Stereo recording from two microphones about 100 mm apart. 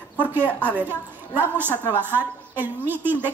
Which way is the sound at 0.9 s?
20° right (ahead or behind).